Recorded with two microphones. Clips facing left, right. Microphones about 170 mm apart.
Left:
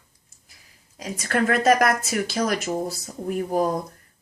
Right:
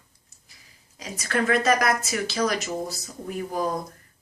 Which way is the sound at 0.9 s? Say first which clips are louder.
Left 2 dB; 50° left (ahead or behind).